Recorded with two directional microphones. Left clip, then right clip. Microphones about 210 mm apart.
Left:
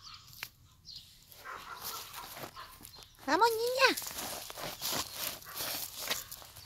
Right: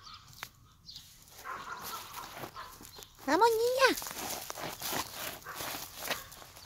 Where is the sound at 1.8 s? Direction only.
45° left (ahead or behind).